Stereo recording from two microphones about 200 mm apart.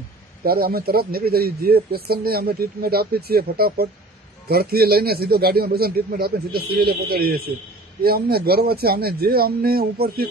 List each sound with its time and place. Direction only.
0.5 s speech: 50° right (ahead or behind)